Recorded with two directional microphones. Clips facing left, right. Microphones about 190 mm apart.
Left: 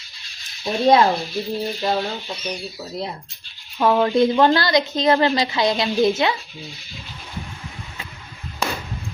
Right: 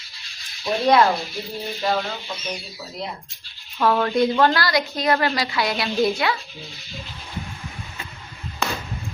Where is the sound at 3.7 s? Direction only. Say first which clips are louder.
Left 3 dB; 15° left (ahead or behind).